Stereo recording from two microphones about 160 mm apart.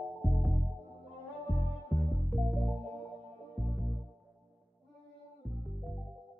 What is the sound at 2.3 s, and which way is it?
Music, centre (ahead or behind).